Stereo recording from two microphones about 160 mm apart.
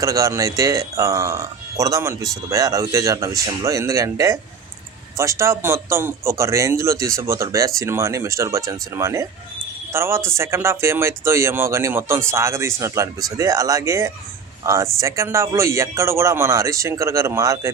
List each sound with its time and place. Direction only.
0.0 s speech: 20° right (ahead or behind)